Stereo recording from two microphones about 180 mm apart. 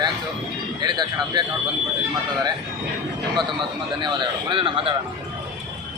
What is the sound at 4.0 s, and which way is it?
Speech, 25° right (ahead or behind).